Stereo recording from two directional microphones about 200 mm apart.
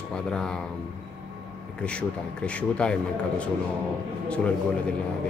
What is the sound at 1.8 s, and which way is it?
A man's voice, 5° left (ahead or behind).